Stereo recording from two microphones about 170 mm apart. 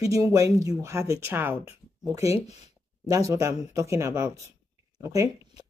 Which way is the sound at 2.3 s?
40° left (ahead or behind).